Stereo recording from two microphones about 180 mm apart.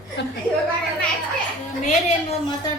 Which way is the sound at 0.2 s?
80° left.